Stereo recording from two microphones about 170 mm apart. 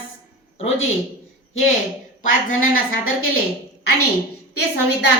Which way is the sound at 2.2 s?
50° left (ahead or behind).